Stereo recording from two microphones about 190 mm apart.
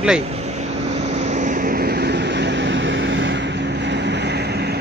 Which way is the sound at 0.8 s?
35° right (ahead or behind).